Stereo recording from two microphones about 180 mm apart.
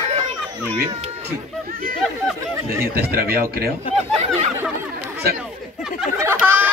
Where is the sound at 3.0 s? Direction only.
55° right (ahead or behind).